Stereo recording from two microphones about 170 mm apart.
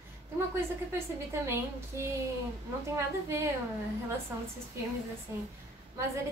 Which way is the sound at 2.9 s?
15° right (ahead or behind).